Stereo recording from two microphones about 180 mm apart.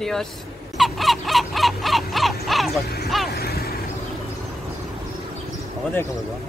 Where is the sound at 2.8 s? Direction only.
60° left (ahead or behind).